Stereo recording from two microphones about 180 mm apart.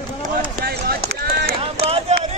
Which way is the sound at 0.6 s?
60° right (ahead or behind).